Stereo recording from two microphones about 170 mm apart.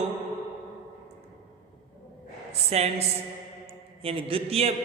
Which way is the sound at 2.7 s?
40° right (ahead or behind).